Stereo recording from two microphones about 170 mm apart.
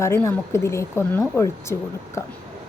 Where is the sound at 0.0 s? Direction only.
15° left (ahead or behind).